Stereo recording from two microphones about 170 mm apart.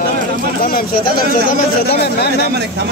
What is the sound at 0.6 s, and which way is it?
Speech, 55° left (ahead or behind).